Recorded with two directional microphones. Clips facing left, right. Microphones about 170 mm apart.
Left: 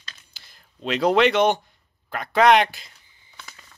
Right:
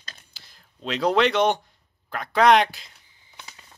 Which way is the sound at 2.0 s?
Centre (ahead or behind).